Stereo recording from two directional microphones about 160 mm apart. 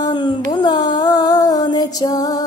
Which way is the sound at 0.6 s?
30° left (ahead or behind).